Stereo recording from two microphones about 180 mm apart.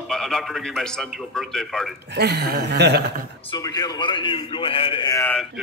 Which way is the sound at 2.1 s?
65° right (ahead or behind).